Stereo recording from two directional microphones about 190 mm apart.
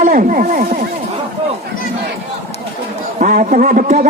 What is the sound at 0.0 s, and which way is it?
Speech, 45° right (ahead or behind).